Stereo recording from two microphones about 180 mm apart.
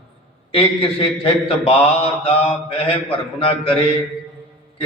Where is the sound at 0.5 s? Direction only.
30° left (ahead or behind).